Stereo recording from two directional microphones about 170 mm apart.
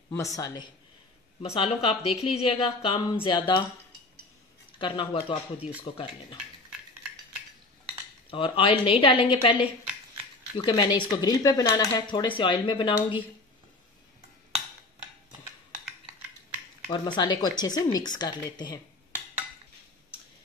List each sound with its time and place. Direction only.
0.2 s speech: 20° left (ahead or behind)
1.4 s a woman's voice: 35° left (ahead or behind)
4.7 s a woman's voice: 30° left (ahead or behind)
8.3 s a woman's voice: 30° left (ahead or behind)
16.9 s speech: 25° left (ahead or behind)